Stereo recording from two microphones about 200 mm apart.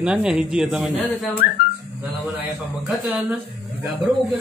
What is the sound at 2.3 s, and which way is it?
A man's voice, 5° right (ahead or behind).